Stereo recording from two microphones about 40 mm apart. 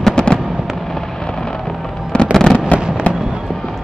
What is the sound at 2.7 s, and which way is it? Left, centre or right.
Fireworks, left.